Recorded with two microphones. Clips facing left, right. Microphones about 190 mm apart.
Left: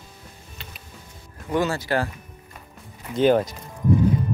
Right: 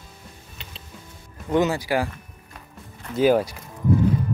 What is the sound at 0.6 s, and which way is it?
Music, 20° right (ahead or behind).